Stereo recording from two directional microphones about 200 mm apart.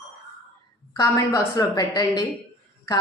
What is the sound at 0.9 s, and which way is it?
A woman's voice, 15° left (ahead or behind).